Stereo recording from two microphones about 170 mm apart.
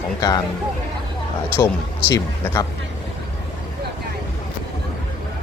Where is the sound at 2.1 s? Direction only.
20° left (ahead or behind).